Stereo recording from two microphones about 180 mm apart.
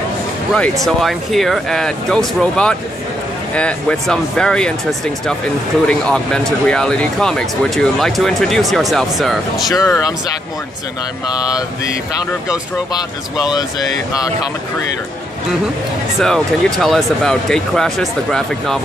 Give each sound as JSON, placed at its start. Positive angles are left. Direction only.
{"t": 0.8, "sound": "speech", "side_deg": 0}
{"t": 9.7, "sound": "speech", "side_deg": 15}
{"t": 12.9, "sound": "speech", "side_deg": 20}
{"t": 16.2, "sound": "speech", "side_deg": 0}